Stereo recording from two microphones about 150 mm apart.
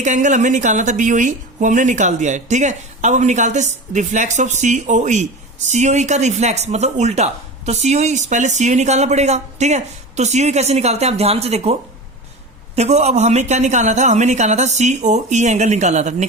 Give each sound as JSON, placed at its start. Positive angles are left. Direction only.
{"t": 0.0, "sound": "speech", "side_deg": -55}